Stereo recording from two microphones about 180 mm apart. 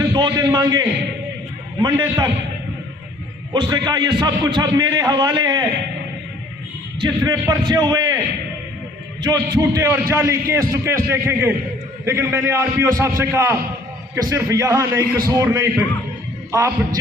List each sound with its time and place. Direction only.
0.1 s a man's voice: 25° right (ahead or behind)
3.5 s a man's voice: 25° right (ahead or behind)
7.0 s a man's voice: 20° right (ahead or behind)
9.2 s a man's voice: 20° right (ahead or behind)